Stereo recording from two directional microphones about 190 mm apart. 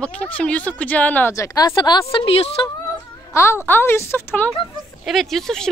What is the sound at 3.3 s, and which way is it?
A woman's voice, 15° left (ahead or behind).